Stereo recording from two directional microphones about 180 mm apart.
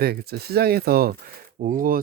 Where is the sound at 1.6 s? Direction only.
50° right (ahead or behind).